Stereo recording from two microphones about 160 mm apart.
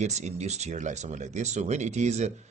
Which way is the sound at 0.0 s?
45° right (ahead or behind).